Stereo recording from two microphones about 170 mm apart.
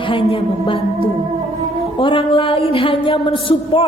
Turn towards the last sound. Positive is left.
turn(degrees=30)  # may be behind; listen again after turning